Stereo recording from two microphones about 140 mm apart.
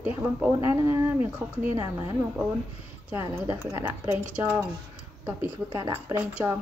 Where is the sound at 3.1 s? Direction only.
15° right (ahead or behind).